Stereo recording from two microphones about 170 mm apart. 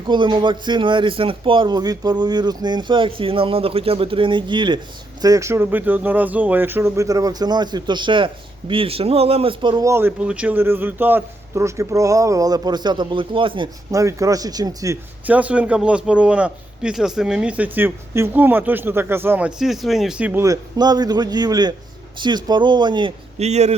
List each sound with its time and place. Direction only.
0.1 s speech: 25° right (ahead or behind)
9.9 s speech: 10° right (ahead or behind); by 13.7 s 30° right (ahead or behind)
13.9 s speech: 20° right (ahead or behind)
15.3 s a man's voice: 10° right (ahead or behind); by 23.1 s 25° right (ahead or behind)
23.4 s speech: 40° right (ahead or behind)